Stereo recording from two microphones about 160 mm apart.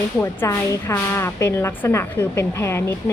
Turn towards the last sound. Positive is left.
turn(degrees=15)  # may be behind; listen again after turning